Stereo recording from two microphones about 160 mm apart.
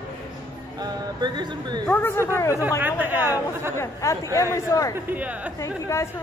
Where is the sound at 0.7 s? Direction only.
25° right (ahead or behind).